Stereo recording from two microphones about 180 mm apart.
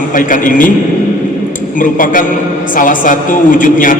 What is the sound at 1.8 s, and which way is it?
A man's voice, 50° left (ahead or behind).